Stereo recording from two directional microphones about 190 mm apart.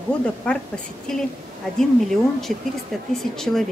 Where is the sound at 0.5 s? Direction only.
5° left (ahead or behind).